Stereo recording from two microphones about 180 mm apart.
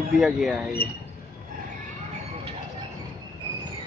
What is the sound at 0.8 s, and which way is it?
Speech, 60° left (ahead or behind).